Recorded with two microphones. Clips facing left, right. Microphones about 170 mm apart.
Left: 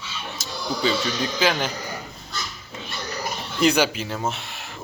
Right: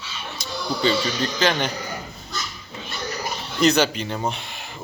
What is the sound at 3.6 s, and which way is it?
Speech, 10° left (ahead or behind).